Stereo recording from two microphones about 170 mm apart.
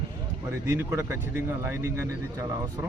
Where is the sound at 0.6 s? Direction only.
15° right (ahead or behind).